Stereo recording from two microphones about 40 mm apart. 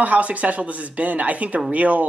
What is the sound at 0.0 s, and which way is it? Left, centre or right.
Speech, right.